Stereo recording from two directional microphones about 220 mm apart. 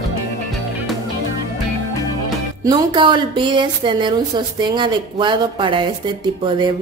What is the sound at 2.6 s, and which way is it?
A woman's voice, 20° right (ahead or behind).